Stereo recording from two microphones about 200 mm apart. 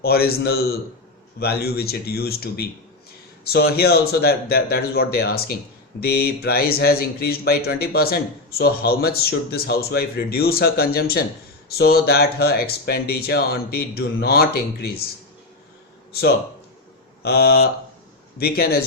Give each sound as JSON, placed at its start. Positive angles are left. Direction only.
{"t": 0.0, "sound": "speech", "side_deg": 50}
{"t": 17.2, "sound": "speech", "side_deg": 55}